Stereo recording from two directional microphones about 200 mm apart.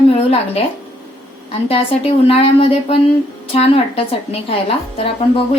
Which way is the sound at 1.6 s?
30° left (ahead or behind).